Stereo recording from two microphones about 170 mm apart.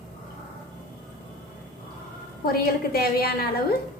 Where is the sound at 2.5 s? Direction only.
60° left (ahead or behind).